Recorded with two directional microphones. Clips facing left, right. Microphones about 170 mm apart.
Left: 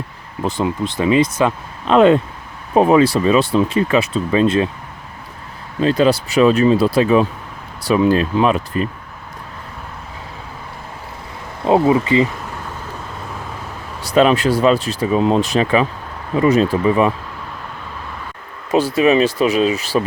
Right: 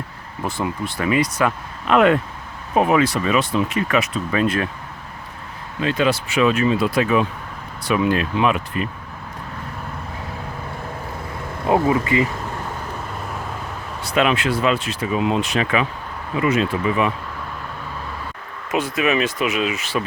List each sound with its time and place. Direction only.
0.4 s speech: 20° left (ahead or behind)
5.8 s speech: 35° left (ahead or behind)
11.6 s speech: 25° left (ahead or behind)
14.0 s speech: 35° left (ahead or behind)
18.7 s speech: 30° left (ahead or behind)